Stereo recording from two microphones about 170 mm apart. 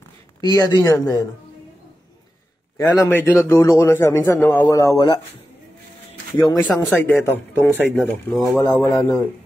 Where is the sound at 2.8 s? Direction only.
15° left (ahead or behind).